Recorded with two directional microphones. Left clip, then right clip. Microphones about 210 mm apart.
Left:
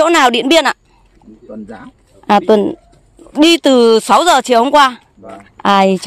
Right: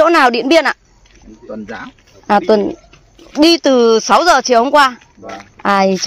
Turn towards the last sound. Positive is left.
turn(degrees=20)  # may be behind; listen again after turning